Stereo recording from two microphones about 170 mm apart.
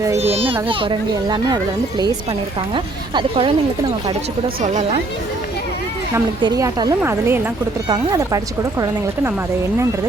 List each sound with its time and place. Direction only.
0.2 s a child's voice: 35° right (ahead or behind)
2.7 s a child's voice: 30° right (ahead or behind)
4.6 s a woman's voice: 45° right (ahead or behind)
6.4 s a woman's voice: 25° right (ahead or behind)